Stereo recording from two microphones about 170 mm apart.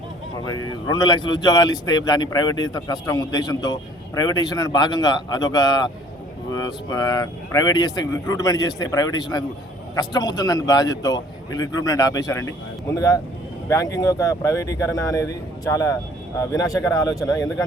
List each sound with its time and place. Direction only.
0.4 s speech: 20° left (ahead or behind)